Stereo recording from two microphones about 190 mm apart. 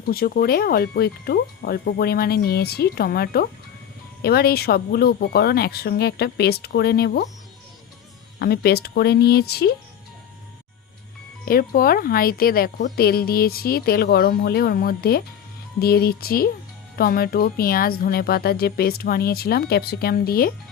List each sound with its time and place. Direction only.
0.0 s speech: 50° left (ahead or behind)
8.4 s speech: 55° left (ahead or behind)
11.4 s speech: 50° left (ahead or behind)